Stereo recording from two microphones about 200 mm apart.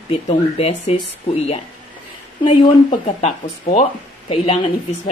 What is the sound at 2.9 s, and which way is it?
Speech, 35° left (ahead or behind).